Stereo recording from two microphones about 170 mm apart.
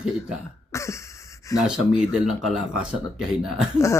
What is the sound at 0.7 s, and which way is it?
Cough, 15° left (ahead or behind).